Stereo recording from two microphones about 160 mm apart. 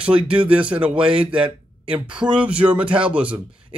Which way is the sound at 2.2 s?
10° right (ahead or behind).